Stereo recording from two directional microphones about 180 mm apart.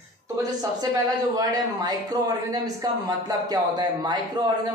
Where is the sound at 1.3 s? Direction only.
20° right (ahead or behind).